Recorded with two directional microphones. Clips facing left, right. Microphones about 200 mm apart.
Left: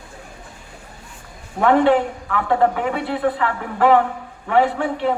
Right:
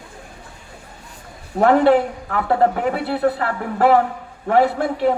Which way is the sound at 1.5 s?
40° right (ahead or behind).